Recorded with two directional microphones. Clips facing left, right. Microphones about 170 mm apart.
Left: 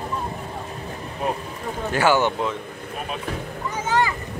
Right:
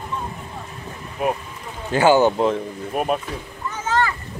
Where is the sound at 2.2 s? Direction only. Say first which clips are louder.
Right 6 dB; 35° right (ahead or behind).